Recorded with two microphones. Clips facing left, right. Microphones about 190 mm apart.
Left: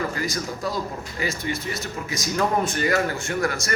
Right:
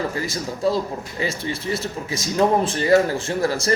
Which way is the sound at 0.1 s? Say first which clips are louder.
Right 1 dB; 25° right (ahead or behind).